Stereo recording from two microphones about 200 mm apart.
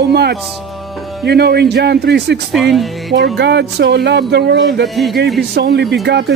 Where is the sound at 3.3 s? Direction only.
60° right (ahead or behind).